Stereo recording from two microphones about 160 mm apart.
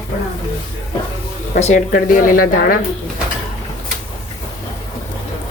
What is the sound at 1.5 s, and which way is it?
Speech, 45° left (ahead or behind).